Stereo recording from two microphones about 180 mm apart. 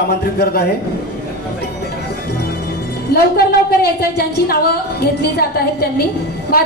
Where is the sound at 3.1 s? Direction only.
60° left (ahead or behind).